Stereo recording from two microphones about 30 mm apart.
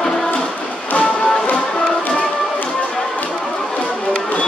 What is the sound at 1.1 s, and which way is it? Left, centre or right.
Music, left.